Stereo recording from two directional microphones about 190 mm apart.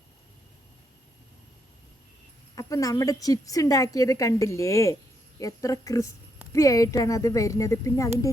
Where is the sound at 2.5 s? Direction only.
20° left (ahead or behind).